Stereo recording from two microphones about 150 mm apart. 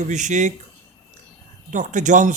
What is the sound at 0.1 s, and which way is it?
Speech, 55° right (ahead or behind).